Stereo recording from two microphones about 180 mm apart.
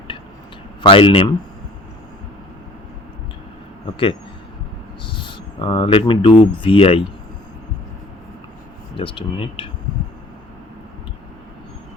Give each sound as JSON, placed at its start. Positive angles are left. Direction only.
{"t": 0.8, "sound": "speech", "side_deg": 30}
{"t": 5.0, "sound": "speech", "side_deg": 25}
{"t": 9.0, "sound": "speech", "side_deg": 30}